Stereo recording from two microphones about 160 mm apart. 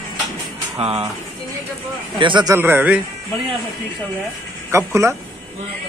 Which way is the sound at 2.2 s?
30° right (ahead or behind).